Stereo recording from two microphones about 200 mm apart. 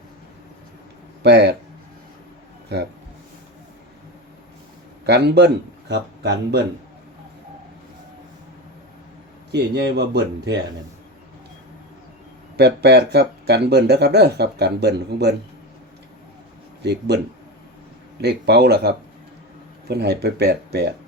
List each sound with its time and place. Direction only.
1.2 s speech: 55° right (ahead or behind)
5.0 s speech: 55° right (ahead or behind)
9.5 s speech: 55° right (ahead or behind)
12.5 s speech: 55° right (ahead or behind)
16.8 s speech: 55° right (ahead or behind)
18.2 s speech: 55° right (ahead or behind)